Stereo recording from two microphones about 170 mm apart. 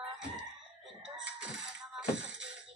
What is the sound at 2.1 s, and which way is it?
Music, 90° right.